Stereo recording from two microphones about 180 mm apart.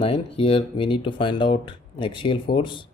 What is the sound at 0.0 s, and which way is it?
Speech, 30° left (ahead or behind).